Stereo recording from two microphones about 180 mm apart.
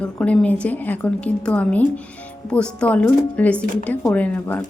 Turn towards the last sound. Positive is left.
turn(degrees=10)  # may be behind; listen again after turning